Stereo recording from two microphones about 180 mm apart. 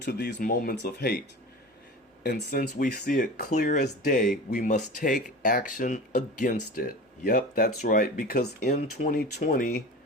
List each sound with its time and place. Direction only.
0.0 s speech: 65° left (ahead or behind)
0.3 s speech: 55° left (ahead or behind)
2.2 s speech: 60° left (ahead or behind)